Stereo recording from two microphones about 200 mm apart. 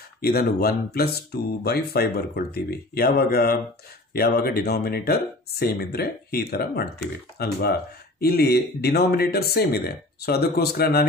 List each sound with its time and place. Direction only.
0.2 s speech: 50° left (ahead or behind)